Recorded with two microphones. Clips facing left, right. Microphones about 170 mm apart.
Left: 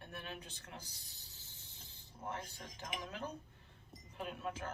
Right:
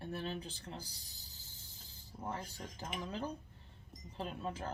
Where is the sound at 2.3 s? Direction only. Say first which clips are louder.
Right 2 dB; 35° right (ahead or behind).